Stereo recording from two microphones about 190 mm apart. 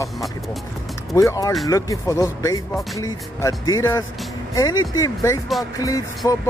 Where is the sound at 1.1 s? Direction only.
15° left (ahead or behind).